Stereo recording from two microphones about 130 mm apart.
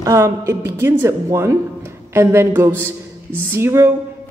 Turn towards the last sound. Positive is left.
turn(degrees=-20)  # may be behind; listen again after turning